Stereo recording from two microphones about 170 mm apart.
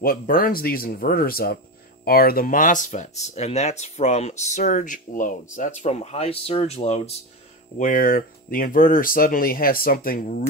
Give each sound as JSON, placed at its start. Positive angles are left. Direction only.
{"t": 0.0, "sound": "speech", "side_deg": 55}
{"t": 7.8, "sound": "speech", "side_deg": 55}